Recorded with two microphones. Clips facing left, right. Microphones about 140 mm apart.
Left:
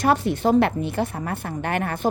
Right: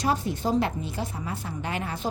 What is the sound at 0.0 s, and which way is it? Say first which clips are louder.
A woman's voice: left 6 dB; 65° left (ahead or behind).